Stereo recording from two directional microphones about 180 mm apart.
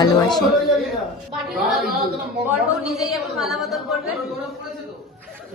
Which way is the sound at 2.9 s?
Centre (ahead or behind).